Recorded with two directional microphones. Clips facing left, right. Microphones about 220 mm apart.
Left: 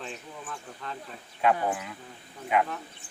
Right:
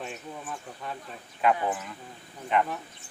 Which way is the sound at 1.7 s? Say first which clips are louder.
Even; 10° left (ahead or behind).